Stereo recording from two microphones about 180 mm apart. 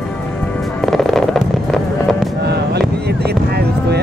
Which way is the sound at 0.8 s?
Centre (ahead or behind).